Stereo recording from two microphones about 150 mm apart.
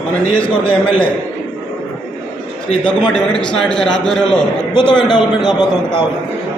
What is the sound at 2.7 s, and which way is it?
Speech, 35° left (ahead or behind).